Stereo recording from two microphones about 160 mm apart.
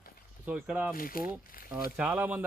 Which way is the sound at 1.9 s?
10° right (ahead or behind).